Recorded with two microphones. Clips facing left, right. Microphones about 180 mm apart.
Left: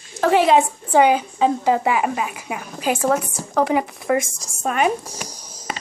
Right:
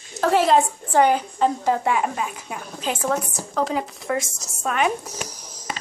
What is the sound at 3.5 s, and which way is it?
Speech, 65° left (ahead or behind).